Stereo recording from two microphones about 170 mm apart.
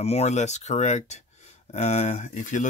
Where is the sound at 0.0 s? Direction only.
40° left (ahead or behind).